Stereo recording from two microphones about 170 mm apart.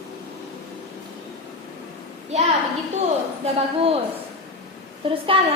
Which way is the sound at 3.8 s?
35° right (ahead or behind).